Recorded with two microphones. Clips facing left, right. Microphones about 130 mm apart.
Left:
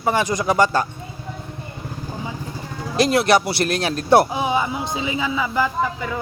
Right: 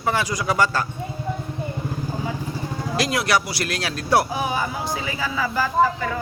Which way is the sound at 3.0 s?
25° left (ahead or behind).